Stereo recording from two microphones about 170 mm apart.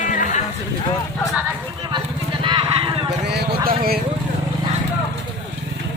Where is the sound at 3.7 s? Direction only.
60° right (ahead or behind).